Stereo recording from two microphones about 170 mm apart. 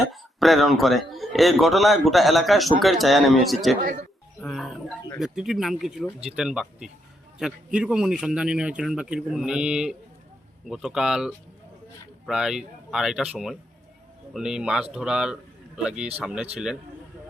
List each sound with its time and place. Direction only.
0.1 s a man's voice: centre (ahead or behind)
4.4 s music: centre (ahead or behind)
5.2 s a man's voice: centre (ahead or behind)